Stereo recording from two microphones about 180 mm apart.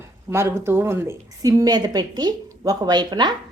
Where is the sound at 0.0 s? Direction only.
15° right (ahead or behind).